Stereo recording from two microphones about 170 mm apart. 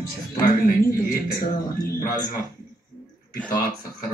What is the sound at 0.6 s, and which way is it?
Speech, 60° left (ahead or behind).